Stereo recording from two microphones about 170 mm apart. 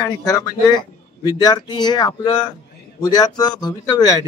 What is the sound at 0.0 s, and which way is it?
A man's voice, 20° left (ahead or behind).